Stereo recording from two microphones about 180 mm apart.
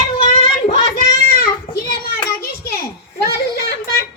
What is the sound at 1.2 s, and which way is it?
Child singing, 60° left (ahead or behind).